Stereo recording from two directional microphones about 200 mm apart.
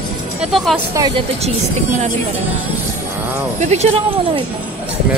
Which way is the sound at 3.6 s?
35° right (ahead or behind).